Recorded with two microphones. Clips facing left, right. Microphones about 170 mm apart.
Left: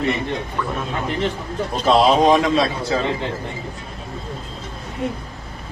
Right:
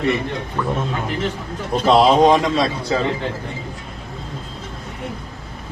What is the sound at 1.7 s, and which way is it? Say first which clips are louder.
A man's voice: right 2 dB; centre (ahead or behind).